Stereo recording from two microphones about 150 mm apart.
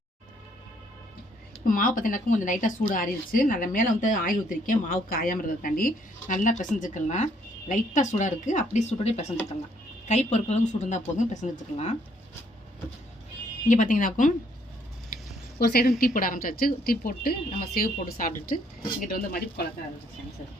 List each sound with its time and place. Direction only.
1.6 s a woman's voice: 65° left (ahead or behind)
13.7 s speech: 60° left (ahead or behind)
15.5 s speech: 90° left